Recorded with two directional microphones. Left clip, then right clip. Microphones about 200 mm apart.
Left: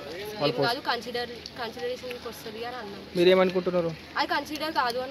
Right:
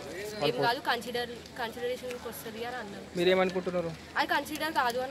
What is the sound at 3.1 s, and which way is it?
Speech, 50° left (ahead or behind).